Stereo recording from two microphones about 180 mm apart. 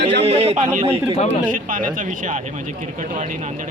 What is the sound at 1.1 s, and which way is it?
Speech, 40° left (ahead or behind).